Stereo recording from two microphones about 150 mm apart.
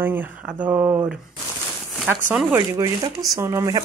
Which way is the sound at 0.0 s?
10° right (ahead or behind).